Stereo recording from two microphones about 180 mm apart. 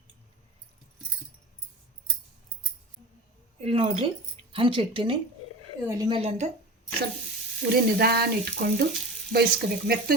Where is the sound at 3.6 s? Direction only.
30° right (ahead or behind).